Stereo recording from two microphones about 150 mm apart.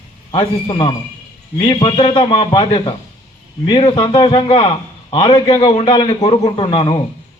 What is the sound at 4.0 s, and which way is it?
A man's voice, 30° left (ahead or behind).